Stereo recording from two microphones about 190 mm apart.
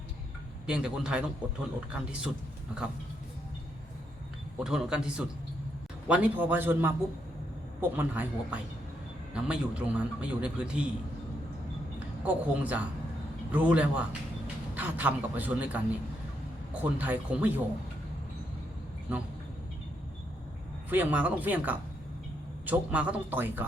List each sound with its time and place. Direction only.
0.7 s a man's voice: 5° right (ahead or behind)
4.6 s a man's voice: 5° right (ahead or behind)
11.9 s a man's voice: 10° right (ahead or behind)
16.8 s a man's voice: 10° right (ahead or behind)
20.9 s a man's voice: 10° right (ahead or behind)